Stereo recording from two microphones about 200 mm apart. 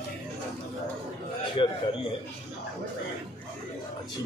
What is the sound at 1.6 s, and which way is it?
Speech, 25° left (ahead or behind).